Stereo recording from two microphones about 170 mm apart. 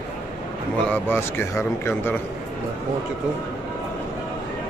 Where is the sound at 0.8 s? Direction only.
10° left (ahead or behind).